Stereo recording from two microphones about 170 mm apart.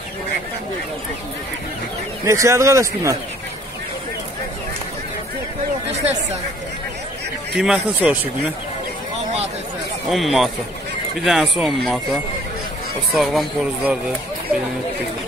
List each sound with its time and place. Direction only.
2.2 s a man's voice: 15° right (ahead or behind)
7.5 s speech: 5° right (ahead or behind)
10.0 s speech: centre (ahead or behind)